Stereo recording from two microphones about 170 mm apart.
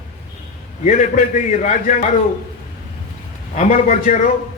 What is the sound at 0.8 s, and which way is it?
A man's voice, 45° left (ahead or behind).